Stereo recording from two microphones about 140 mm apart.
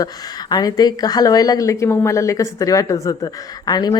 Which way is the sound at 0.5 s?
30° left (ahead or behind).